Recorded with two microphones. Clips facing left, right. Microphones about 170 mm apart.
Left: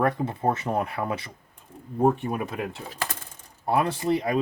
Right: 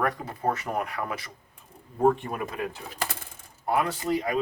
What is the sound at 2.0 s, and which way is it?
Speech, 10° left (ahead or behind).